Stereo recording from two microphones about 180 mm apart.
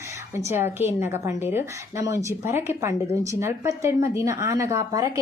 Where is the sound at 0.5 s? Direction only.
15° right (ahead or behind).